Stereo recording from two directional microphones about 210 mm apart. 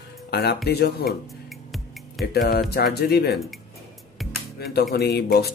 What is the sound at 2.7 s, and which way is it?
Speech, 50° left (ahead or behind).